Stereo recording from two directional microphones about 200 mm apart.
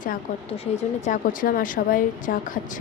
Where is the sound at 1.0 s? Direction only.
45° left (ahead or behind).